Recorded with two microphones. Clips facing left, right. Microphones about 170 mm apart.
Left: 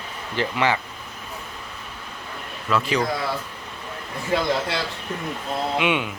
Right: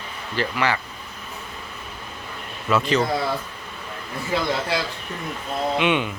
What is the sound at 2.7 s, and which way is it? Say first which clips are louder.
Speech: right 2 dB; 10° left (ahead or behind).